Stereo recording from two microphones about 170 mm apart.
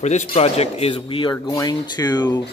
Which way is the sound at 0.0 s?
45° left (ahead or behind).